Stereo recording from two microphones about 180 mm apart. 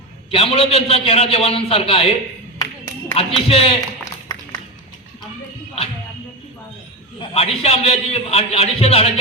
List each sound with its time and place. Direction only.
0.3 s a man's voice: 35° left (ahead or behind)
2.6 s clapping: 20° left (ahead or behind)
3.2 s a man's voice: 30° left (ahead or behind)
7.2 s a man's voice: 35° left (ahead or behind)